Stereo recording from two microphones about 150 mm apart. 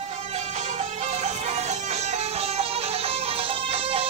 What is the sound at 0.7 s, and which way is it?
Music, 50° right (ahead or behind).